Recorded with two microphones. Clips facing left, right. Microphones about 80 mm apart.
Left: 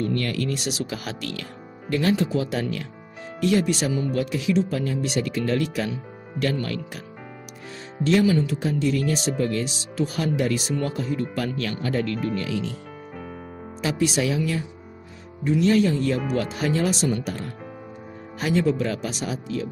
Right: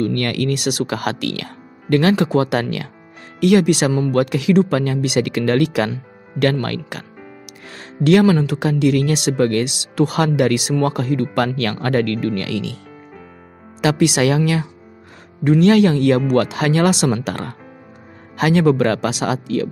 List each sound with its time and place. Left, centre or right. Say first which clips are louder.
0.0 s speech: right 6 dB; right
3.9 s speech: right 7 dB; right
13.7 s speech: right 7 dB; right